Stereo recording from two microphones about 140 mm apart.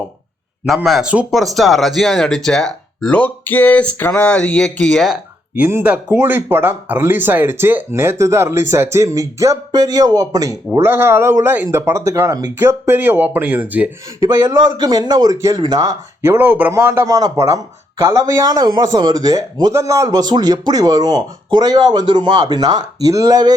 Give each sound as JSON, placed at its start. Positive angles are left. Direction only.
{"t": 0.6, "sound": "speech", "side_deg": -5}
{"t": 14.2, "sound": "speech", "side_deg": -25}
{"t": 16.2, "sound": "speech", "side_deg": -15}